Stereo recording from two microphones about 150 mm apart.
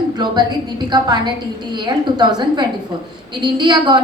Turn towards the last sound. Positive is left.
turn(degrees=-30)  # may be behind; listen again after turning